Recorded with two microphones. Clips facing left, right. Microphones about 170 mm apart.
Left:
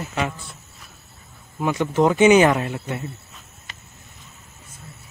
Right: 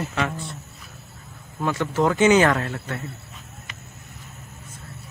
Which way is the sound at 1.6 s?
15° left (ahead or behind).